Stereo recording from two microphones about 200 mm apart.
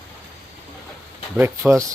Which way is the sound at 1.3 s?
10° right (ahead or behind).